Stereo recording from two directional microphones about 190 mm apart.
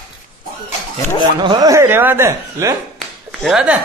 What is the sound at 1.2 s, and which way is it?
A man's voice, 25° right (ahead or behind).